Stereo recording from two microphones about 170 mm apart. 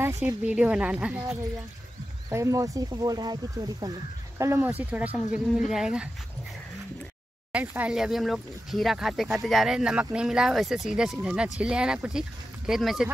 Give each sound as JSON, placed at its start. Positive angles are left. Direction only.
{"t": 0.0, "sound": "a woman's voice", "side_deg": -15}
{"t": 2.2, "sound": "speech", "side_deg": -20}
{"t": 7.5, "sound": "speech", "side_deg": -10}